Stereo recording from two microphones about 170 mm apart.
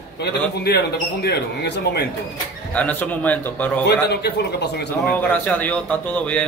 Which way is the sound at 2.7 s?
10° left (ahead or behind).